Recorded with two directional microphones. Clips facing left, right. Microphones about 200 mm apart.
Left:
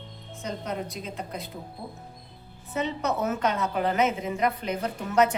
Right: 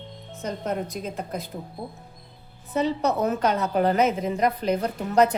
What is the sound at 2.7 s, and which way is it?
A woman's voice, 35° right (ahead or behind).